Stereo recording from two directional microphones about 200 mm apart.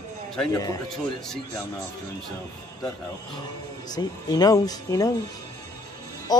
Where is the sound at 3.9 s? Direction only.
20° left (ahead or behind).